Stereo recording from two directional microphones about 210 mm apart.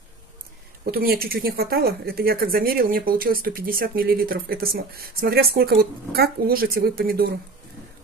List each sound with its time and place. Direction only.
0.9 s speech: 45° right (ahead or behind)